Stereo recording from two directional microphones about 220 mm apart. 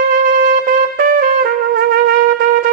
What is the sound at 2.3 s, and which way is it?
Wind instrument, 40° right (ahead or behind).